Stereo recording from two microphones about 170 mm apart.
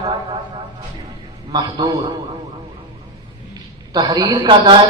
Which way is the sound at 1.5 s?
25° right (ahead or behind).